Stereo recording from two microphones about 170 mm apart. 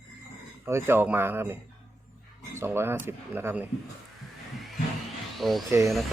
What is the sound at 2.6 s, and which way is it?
Speech, 15° right (ahead or behind).